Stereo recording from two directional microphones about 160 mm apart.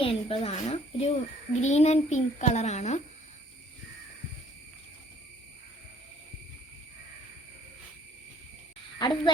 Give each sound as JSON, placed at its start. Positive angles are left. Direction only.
{"t": 0.0, "sound": "a child's voice", "side_deg": 35}
{"t": 9.0, "sound": "a woman's voice", "side_deg": 30}